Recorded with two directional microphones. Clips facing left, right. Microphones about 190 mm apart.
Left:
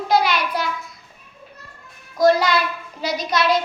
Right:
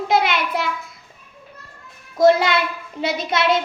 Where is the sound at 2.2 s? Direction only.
25° right (ahead or behind).